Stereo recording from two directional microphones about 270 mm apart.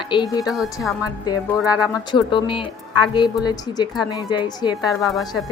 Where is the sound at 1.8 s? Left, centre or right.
Centre.